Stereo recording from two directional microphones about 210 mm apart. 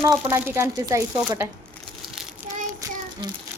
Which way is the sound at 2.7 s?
15° right (ahead or behind).